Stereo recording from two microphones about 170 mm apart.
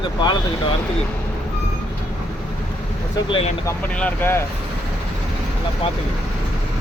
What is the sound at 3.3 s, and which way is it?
Speech, 35° left (ahead or behind).